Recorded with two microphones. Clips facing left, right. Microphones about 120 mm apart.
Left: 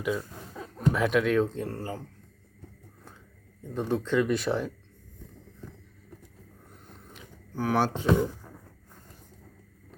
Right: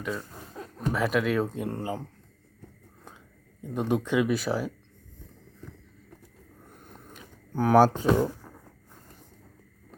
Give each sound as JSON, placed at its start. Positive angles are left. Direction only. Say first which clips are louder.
{"t": 0.0, "sound": "a man's voice", "louder": "left 3 dB", "side_deg": 5}
{"t": 3.6, "sound": "a man's voice", "louder": "right 2 dB", "side_deg": -15}
{"t": 6.9, "sound": "a sound", "louder": "even", "side_deg": -45}